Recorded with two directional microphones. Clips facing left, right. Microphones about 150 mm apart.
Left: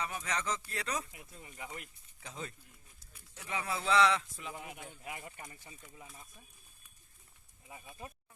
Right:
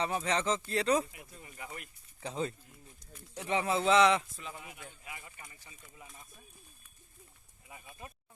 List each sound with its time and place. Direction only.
0.0 s speech: 30° right (ahead or behind)
1.4 s speech: 15° left (ahead or behind)
2.2 s speech: 30° right (ahead or behind)
4.4 s speech: 15° left (ahead or behind)
5.0 s speech: 45° left (ahead or behind)